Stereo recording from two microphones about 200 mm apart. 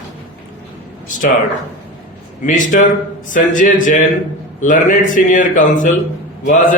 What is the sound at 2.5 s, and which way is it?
Speech, 40° left (ahead or behind).